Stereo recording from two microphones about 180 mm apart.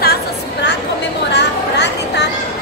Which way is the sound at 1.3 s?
70° left (ahead or behind).